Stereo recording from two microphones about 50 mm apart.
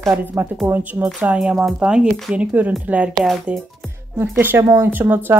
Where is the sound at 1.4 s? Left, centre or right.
Centre.